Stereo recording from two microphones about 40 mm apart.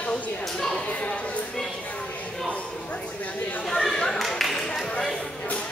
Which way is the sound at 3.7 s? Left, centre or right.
Centre.